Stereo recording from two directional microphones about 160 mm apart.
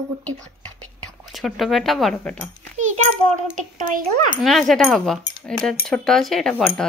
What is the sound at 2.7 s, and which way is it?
Speech, 50° right (ahead or behind).